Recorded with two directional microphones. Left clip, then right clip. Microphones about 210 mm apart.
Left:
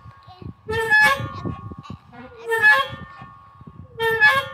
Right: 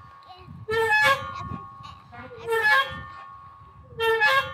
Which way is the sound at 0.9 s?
10° right (ahead or behind).